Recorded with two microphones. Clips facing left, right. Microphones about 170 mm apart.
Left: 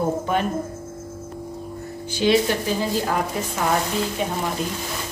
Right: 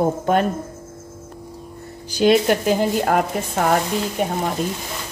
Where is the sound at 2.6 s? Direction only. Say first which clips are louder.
Right 5 dB; 65° right (ahead or behind).